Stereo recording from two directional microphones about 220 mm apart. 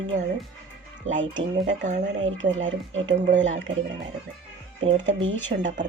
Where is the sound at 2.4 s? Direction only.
60° right (ahead or behind).